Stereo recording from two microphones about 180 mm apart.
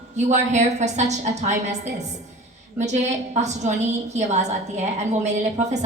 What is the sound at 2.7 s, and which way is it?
A woman's voice, 40° right (ahead or behind).